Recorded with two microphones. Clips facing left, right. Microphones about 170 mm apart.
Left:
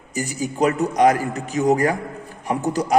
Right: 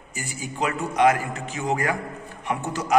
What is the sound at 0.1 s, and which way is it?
A man's voice, 40° left (ahead or behind).